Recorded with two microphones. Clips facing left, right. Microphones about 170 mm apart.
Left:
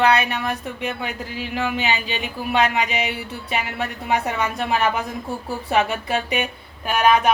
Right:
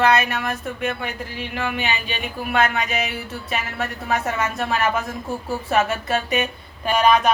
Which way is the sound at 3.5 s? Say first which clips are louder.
Left 1 dB; 15° left (ahead or behind).